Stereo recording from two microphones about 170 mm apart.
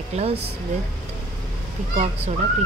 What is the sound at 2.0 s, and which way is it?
Speech, 40° right (ahead or behind).